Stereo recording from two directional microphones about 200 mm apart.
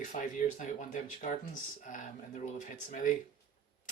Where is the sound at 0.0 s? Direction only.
40° left (ahead or behind).